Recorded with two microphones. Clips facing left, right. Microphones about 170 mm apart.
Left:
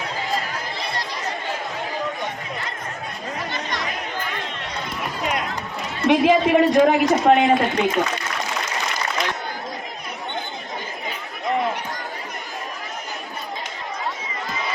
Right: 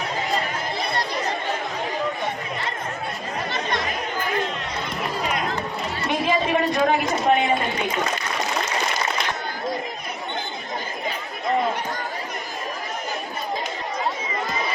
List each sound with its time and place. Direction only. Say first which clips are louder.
6.1 s a man's voice: left 7 dB; 70° left (ahead or behind)